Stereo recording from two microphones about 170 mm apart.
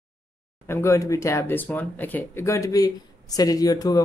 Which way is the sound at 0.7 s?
15° left (ahead or behind).